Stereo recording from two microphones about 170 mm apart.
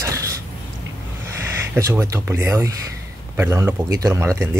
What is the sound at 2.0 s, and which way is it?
Speech, 15° right (ahead or behind).